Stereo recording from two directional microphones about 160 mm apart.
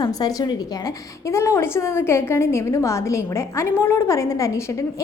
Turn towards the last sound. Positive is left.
turn(degrees=20)  # may be behind; listen again after turning